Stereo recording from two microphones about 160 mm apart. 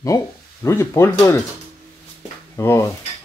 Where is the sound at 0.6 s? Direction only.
15° left (ahead or behind).